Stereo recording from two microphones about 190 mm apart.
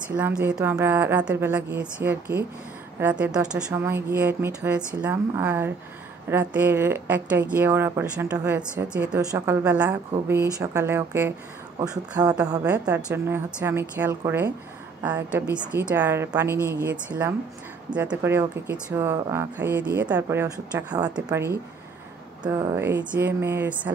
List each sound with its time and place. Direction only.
0.1 s a woman's voice: 5° right (ahead or behind)
12.6 s a woman's voice: 10° right (ahead or behind)